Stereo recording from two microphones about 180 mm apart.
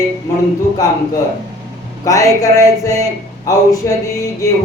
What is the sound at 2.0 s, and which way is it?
Speech, 20° left (ahead or behind).